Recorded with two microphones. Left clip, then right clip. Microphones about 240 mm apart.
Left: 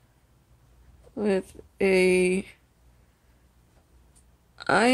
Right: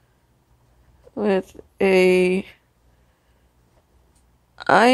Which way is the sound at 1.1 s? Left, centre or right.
Centre.